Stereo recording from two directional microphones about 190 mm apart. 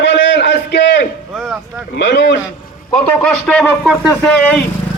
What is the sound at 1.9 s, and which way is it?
Speech, 60° left (ahead or behind).